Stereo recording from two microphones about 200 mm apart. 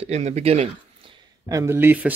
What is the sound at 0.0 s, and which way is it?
Speech, 35° right (ahead or behind).